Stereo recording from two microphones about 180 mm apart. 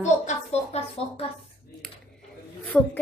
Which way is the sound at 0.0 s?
40° left (ahead or behind).